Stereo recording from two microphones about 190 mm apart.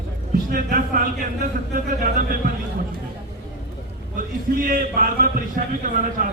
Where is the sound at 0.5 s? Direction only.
45° right (ahead or behind).